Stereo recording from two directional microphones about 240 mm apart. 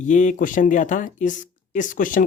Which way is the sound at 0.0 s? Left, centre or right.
Left.